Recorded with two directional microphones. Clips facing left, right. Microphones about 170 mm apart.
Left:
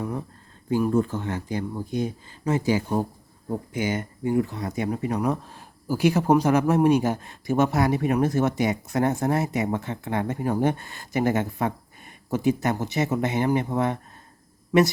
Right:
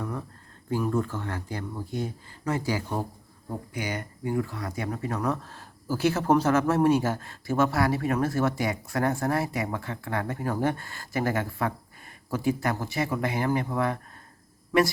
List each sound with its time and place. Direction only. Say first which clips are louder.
0.7 s speech: left 5 dB; 20° left (ahead or behind)